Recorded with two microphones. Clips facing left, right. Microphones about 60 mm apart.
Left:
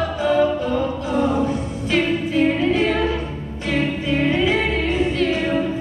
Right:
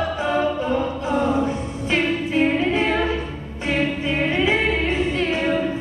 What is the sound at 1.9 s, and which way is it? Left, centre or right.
Music, right.